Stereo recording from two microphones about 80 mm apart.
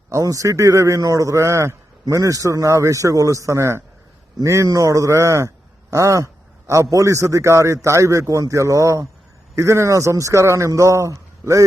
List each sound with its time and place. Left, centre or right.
0.1 s a man's voice: right